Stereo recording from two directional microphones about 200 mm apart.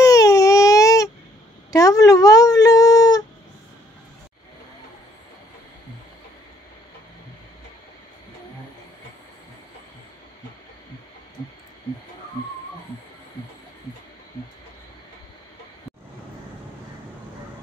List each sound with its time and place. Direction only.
0.0 s baby cry: 15° left (ahead or behind)
1.7 s speech: 15° left (ahead or behind)